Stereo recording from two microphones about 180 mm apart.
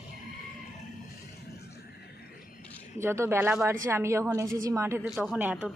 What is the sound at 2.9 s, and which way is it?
A woman's voice, 15° right (ahead or behind).